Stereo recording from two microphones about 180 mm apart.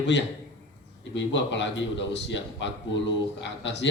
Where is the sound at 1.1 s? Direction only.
90° left.